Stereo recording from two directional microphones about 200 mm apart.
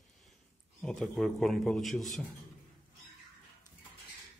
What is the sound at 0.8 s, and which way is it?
A man's voice, 5° left (ahead or behind).